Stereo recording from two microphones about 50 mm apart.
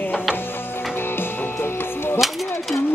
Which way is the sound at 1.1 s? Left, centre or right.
Left.